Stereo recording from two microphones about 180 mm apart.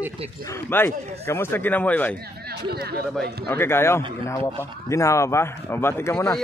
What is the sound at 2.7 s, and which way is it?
Speech, 60° right (ahead or behind).